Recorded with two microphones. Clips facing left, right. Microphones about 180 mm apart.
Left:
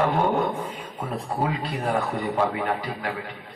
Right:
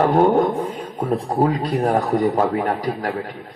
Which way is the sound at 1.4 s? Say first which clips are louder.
Right 8 dB; 40° right (ahead or behind).